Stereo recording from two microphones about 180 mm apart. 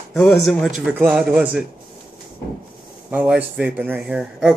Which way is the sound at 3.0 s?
5° right (ahead or behind).